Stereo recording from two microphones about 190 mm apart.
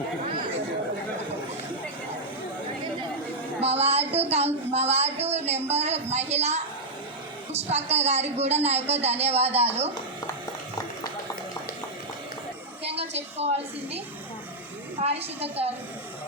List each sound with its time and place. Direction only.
3.6 s a woman's voice: 35° right (ahead or behind)
12.8 s a sound: 30° right (ahead or behind)
13.4 s a woman's voice: 35° right (ahead or behind)